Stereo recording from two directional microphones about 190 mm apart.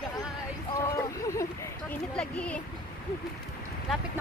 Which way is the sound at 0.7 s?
15° left (ahead or behind).